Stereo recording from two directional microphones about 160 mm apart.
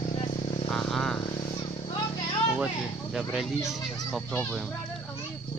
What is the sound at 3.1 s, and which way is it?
Speech, centre (ahead or behind).